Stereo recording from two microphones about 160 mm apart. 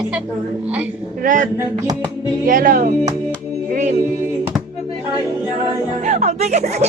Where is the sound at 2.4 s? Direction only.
60° right (ahead or behind).